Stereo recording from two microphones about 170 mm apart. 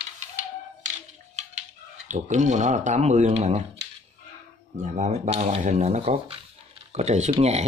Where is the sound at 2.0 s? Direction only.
45° right (ahead or behind).